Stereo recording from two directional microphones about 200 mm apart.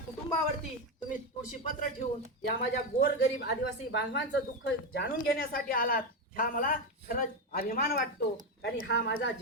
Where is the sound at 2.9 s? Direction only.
55° left (ahead or behind).